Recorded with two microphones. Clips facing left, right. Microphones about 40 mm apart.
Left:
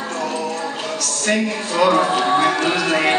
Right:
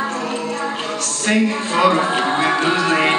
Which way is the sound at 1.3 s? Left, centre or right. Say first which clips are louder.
Right 3 dB; right.